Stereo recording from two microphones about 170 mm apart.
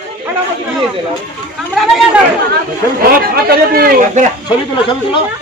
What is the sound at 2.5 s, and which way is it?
Speech, 60° right (ahead or behind).